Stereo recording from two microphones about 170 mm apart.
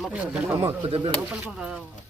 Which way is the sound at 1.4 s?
5° right (ahead or behind).